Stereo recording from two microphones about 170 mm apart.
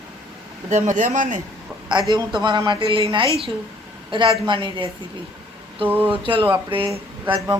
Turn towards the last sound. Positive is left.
turn(degrees=-30)  # may be behind; listen again after turning